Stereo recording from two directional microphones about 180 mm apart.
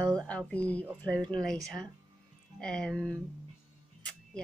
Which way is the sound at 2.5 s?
5° left (ahead or behind).